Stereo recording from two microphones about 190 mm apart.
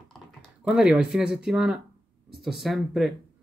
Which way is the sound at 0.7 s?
5° right (ahead or behind).